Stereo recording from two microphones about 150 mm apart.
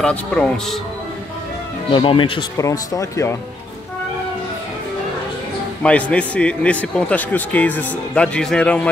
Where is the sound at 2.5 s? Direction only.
20° left (ahead or behind).